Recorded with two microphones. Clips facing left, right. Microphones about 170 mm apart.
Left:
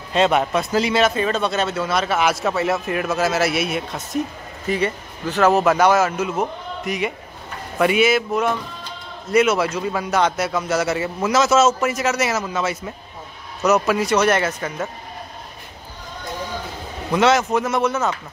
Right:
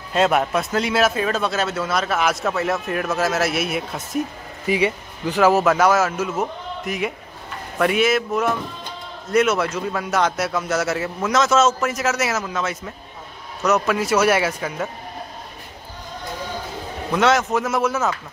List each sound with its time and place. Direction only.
0.1 s speech: centre (ahead or behind)
17.1 s speech: centre (ahead or behind)